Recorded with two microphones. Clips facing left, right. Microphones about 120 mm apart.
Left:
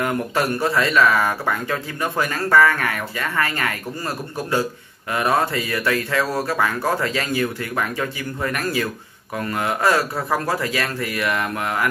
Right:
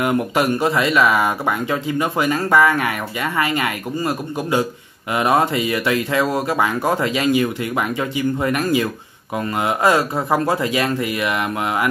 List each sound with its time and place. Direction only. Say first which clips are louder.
0.0 s speech: right 3 dB; 15° right (ahead or behind)